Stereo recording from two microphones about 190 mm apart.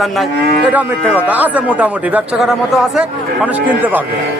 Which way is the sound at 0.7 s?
10° right (ahead or behind).